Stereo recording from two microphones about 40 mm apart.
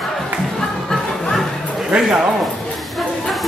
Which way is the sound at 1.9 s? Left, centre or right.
Centre.